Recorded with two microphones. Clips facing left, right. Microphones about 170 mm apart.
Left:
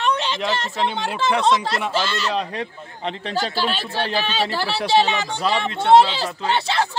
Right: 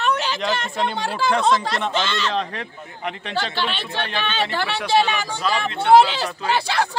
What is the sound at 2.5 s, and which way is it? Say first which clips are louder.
Speech: left 3 dB; 30° left (ahead or behind).